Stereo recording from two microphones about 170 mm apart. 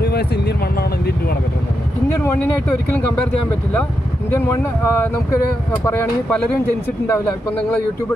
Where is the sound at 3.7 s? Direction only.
10° left (ahead or behind).